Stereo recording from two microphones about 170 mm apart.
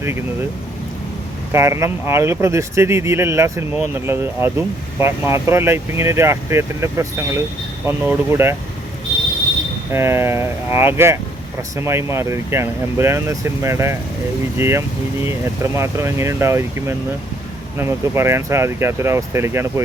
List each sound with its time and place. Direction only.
1.5 s speech: 15° right (ahead or behind)
9.9 s speech: 15° right (ahead or behind)